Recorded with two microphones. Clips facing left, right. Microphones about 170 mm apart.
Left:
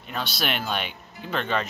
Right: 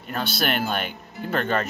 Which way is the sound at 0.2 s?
Centre (ahead or behind).